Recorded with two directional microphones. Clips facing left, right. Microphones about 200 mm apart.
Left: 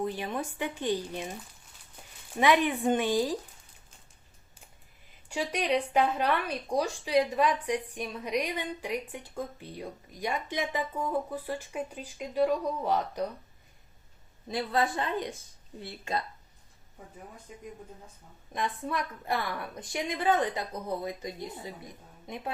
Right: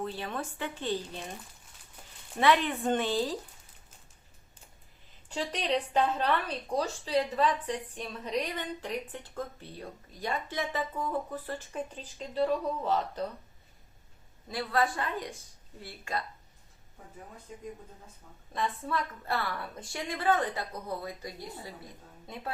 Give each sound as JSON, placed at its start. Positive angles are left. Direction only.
{"t": 0.0, "sound": "speech", "side_deg": 15}
{"t": 2.4, "sound": "speech", "side_deg": 15}
{"t": 5.3, "sound": "speech", "side_deg": 10}
{"t": 14.4, "sound": "a woman's voice", "side_deg": 20}
{"t": 18.5, "sound": "speech", "side_deg": 15}